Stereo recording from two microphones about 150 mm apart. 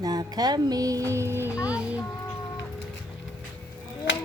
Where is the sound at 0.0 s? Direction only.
25° right (ahead or behind); by 2.0 s 10° right (ahead or behind).